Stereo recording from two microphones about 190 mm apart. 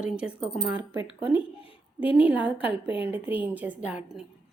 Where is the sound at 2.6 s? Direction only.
30° left (ahead or behind).